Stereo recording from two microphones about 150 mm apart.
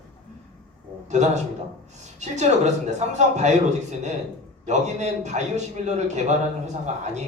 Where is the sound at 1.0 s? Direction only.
50° right (ahead or behind).